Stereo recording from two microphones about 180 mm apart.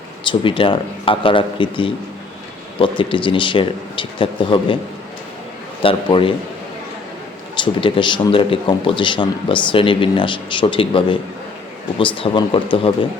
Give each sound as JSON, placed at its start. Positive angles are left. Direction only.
{"t": 0.3, "sound": "a man's voice", "side_deg": 30}
{"t": 3.0, "sound": "a man's voice", "side_deg": 30}
{"t": 5.8, "sound": "a man's voice", "side_deg": 30}
{"t": 7.6, "sound": "a man's voice", "side_deg": 30}